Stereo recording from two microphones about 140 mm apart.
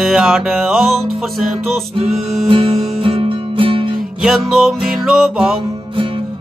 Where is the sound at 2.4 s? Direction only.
40° right (ahead or behind).